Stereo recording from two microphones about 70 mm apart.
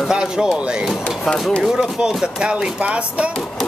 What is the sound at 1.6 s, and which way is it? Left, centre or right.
Speech, centre.